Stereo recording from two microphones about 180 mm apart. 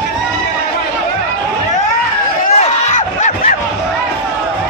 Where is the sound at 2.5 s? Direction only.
40° left (ahead or behind).